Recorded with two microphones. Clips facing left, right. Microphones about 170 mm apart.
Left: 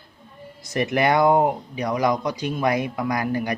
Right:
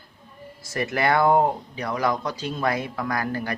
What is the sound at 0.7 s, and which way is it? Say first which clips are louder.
Speech: left 3 dB; 20° left (ahead or behind).